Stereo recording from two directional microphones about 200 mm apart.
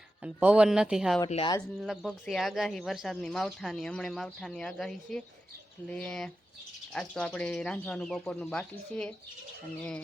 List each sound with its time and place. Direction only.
0.2 s speech: 5° right (ahead or behind)
1.3 s speech: 25° left (ahead or behind)
1.8 s speech: centre (ahead or behind)